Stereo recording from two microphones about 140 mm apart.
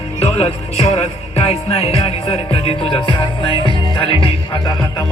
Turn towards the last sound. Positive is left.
turn(degrees=40)  # may be behind; listen again after turning